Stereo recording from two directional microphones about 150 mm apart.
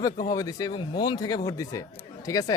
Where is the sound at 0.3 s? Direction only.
25° left (ahead or behind).